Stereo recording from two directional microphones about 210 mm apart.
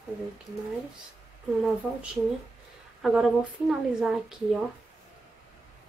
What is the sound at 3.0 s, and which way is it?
A woman's voice, 5° right (ahead or behind).